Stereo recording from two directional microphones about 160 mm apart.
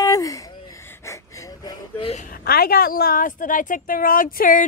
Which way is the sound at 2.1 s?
60° left (ahead or behind).